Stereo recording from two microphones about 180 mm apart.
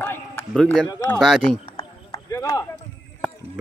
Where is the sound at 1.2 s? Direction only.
Centre (ahead or behind).